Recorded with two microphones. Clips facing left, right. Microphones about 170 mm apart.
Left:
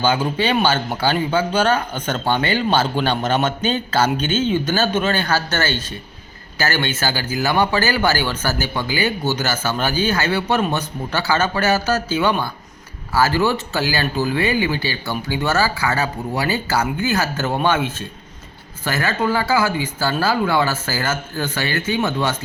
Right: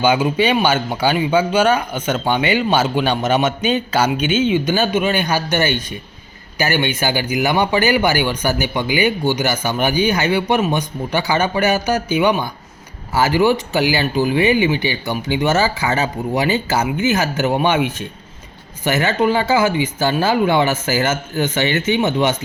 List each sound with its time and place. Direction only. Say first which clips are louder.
0.0 s speech: right 3 dB; 10° right (ahead or behind)